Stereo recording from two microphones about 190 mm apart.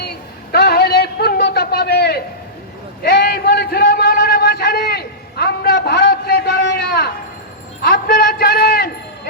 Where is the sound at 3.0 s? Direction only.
60° left (ahead or behind).